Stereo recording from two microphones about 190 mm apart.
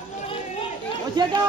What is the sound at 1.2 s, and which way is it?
Chatter, 25° right (ahead or behind).